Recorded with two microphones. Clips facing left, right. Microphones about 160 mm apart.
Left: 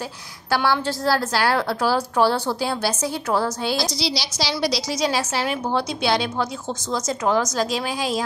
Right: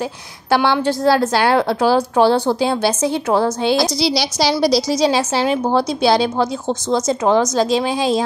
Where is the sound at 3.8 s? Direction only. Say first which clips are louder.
Right 8 dB; 55° right (ahead or behind).